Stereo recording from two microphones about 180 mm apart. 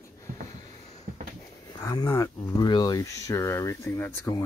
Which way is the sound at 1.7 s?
20° left (ahead or behind).